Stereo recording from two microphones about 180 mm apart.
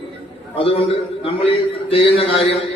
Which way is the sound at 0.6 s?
30° left (ahead or behind).